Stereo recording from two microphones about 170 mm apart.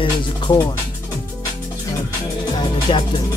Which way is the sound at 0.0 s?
25° left (ahead or behind).